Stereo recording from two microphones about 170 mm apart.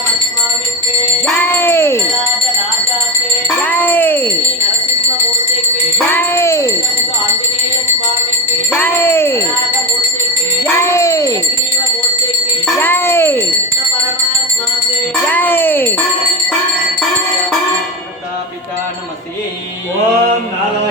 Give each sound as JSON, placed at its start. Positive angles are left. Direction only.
{"t": 1.4, "sound": "music", "side_deg": 15}
{"t": 3.6, "sound": "music", "side_deg": 10}
{"t": 6.1, "sound": "music", "side_deg": 15}
{"t": 8.7, "sound": "music", "side_deg": 10}
{"t": 10.6, "sound": "cat", "side_deg": 15}
{"t": 12.8, "sound": "music", "side_deg": 15}
{"t": 15.3, "sound": "music", "side_deg": 10}